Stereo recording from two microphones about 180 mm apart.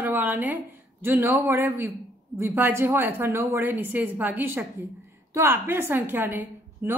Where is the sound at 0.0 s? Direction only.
10° right (ahead or behind).